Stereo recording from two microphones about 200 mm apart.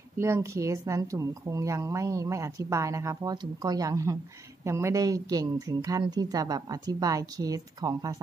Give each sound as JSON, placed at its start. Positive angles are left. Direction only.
{"t": 0.2, "sound": "speech", "side_deg": -15}